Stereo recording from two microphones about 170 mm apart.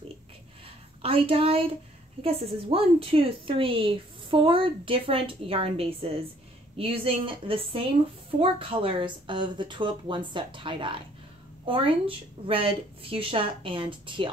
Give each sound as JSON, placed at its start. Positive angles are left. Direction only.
{"t": 1.0, "sound": "speech", "side_deg": -35}